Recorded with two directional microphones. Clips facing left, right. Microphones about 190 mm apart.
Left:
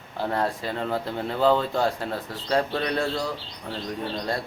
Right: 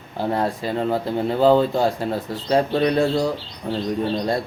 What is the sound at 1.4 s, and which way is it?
Speech, 35° right (ahead or behind).